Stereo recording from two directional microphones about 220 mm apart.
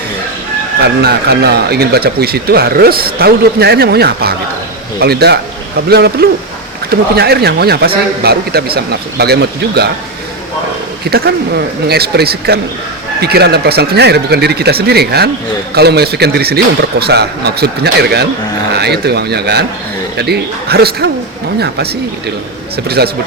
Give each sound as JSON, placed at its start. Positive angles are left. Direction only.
{"t": 1.0, "sound": "speech", "side_deg": -45}
{"t": 11.1, "sound": "speech", "side_deg": -45}